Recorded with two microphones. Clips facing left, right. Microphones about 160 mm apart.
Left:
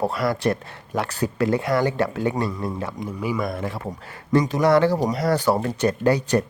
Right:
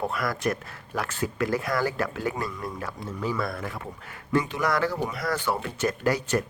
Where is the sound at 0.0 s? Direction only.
30° left (ahead or behind).